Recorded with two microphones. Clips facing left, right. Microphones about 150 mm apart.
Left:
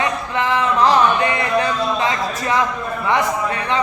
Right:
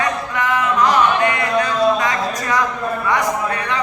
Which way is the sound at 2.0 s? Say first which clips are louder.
Even; 25° left (ahead or behind).